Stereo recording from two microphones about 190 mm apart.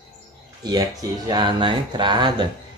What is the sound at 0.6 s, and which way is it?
Speech, 20° right (ahead or behind).